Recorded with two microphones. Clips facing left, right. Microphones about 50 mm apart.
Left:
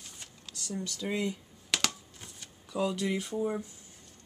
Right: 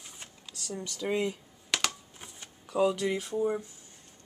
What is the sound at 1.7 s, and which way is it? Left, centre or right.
Computer keyboard, centre.